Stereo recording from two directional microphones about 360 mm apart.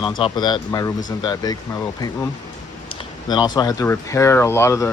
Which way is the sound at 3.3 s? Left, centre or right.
Centre.